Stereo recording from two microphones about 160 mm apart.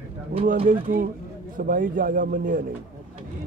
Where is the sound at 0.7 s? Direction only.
60° right (ahead or behind).